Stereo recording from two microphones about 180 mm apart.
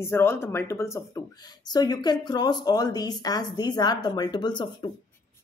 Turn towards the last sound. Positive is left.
turn(degrees=25)  # may be behind; listen again after turning